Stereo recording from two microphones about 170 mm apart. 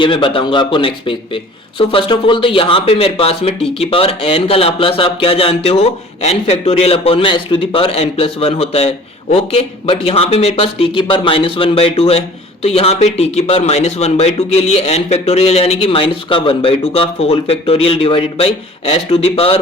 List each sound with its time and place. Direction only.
0.0 s speech: 30° left (ahead or behind)